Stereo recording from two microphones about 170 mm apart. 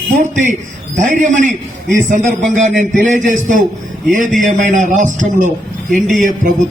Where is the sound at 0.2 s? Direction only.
45° right (ahead or behind).